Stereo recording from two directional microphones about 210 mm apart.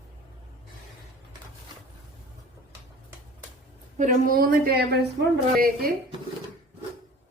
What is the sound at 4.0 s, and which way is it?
A woman's voice, 40° right (ahead or behind).